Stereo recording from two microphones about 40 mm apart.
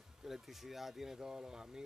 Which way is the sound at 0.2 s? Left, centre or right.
Centre.